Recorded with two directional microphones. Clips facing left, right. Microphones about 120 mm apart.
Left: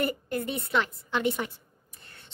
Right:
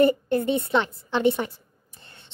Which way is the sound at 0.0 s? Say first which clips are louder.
Right 10 dB; 30° right (ahead or behind).